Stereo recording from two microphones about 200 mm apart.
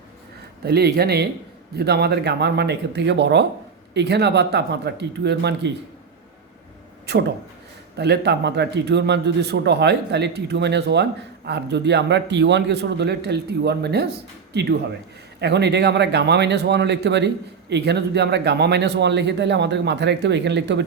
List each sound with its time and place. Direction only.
0.6 s speech: 50° right (ahead or behind)
7.1 s speech: 55° right (ahead or behind)